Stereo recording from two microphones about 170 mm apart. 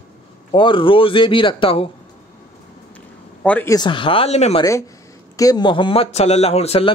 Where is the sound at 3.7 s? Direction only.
25° left (ahead or behind).